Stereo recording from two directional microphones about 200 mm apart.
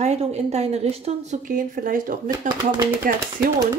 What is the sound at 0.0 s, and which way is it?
A woman's voice, 35° right (ahead or behind).